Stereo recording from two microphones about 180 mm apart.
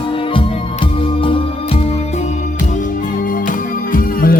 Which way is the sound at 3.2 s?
50° left (ahead or behind).